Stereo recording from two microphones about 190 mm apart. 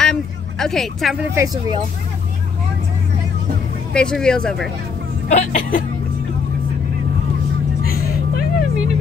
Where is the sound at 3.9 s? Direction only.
5° left (ahead or behind).